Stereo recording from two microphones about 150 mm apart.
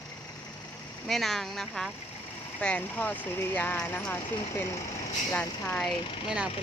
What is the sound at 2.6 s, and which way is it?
Speech, 5° left (ahead or behind).